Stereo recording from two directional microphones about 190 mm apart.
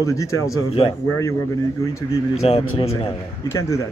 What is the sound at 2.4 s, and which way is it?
Speech, 30° left (ahead or behind).